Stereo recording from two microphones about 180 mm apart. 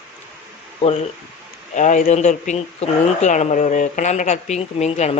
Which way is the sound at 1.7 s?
45° left (ahead or behind).